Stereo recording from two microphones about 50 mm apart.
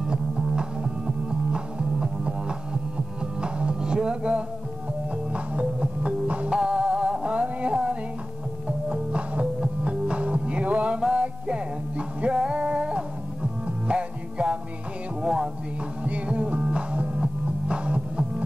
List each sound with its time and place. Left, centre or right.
0.0 s music: centre
15.2 s a sound: centre
16.0 s music: right